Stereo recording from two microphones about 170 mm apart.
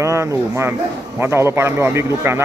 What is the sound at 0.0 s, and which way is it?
Speech, 15° right (ahead or behind).